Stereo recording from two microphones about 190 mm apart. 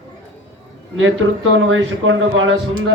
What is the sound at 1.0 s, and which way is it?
A man's voice, 90° right.